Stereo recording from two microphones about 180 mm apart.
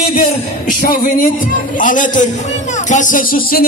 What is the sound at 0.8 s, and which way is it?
A man's voice, 50° left (ahead or behind).